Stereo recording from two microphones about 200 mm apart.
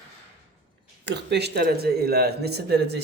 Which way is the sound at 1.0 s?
55° right (ahead or behind).